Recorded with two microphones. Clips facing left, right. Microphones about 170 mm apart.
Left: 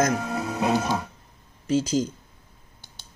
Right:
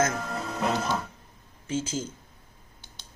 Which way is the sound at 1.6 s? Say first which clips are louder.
Left 8 dB; 35° left (ahead or behind).